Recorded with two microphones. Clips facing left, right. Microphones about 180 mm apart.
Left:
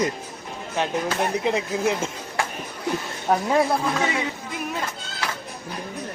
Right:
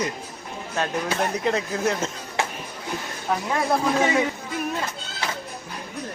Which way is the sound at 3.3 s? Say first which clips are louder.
Left 4 dB; 40° left (ahead or behind).